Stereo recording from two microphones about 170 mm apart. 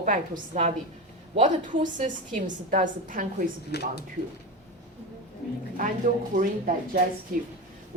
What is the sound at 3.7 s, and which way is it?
Speech, 75° left (ahead or behind).